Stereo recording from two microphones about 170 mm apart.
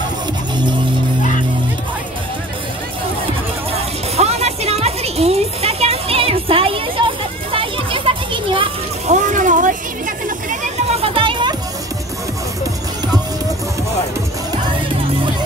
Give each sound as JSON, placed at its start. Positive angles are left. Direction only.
{"t": 4.2, "sound": "music", "side_deg": -40}
{"t": 7.5, "sound": "children playing", "side_deg": -30}
{"t": 10.5, "sound": "music", "side_deg": -40}